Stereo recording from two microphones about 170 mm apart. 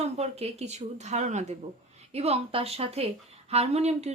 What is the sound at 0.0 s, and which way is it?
A woman's voice, 40° right (ahead or behind).